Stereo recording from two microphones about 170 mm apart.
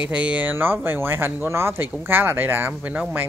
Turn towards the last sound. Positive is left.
turn(degrees=-10)  # may be behind; listen again after turning